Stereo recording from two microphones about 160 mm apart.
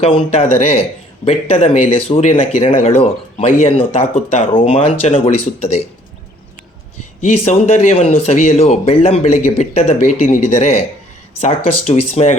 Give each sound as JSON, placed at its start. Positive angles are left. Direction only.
{"t": 0.0, "sound": "a man's voice", "side_deg": 35}
{"t": 7.4, "sound": "speech", "side_deg": 40}